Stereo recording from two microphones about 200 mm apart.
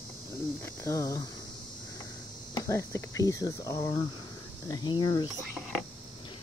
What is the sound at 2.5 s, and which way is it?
Speech, 15° left (ahead or behind).